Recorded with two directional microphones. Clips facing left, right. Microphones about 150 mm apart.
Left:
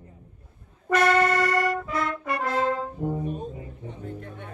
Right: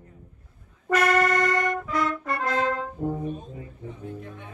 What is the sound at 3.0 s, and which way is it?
Brass instrument, 10° left (ahead or behind).